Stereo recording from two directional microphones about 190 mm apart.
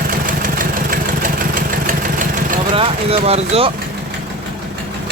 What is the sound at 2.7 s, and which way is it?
Speech, 30° right (ahead or behind).